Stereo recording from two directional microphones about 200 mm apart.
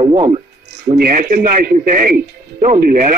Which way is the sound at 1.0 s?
45° right (ahead or behind).